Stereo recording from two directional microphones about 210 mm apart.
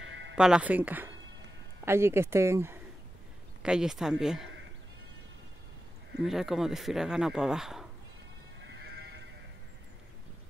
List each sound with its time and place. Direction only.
0.0 s a sound: 65° right (ahead or behind)
0.4 s speech: 5° right (ahead or behind)
6.2 s speech: centre (ahead or behind)